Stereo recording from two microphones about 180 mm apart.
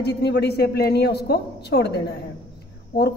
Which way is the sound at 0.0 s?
65° left (ahead or behind).